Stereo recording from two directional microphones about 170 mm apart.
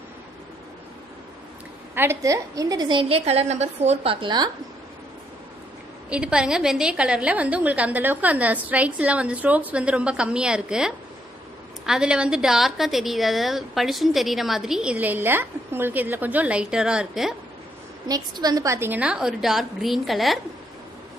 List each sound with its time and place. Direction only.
2.0 s a woman's voice: 15° right (ahead or behind)
6.0 s a woman's voice: 5° right (ahead or behind)
18.0 s a woman's voice: 20° right (ahead or behind); by 20.3 s centre (ahead or behind)